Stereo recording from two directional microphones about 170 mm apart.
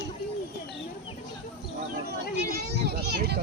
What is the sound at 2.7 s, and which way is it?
Speech, 75° right (ahead or behind).